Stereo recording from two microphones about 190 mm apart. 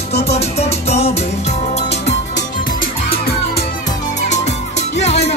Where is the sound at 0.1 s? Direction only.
35° left (ahead or behind).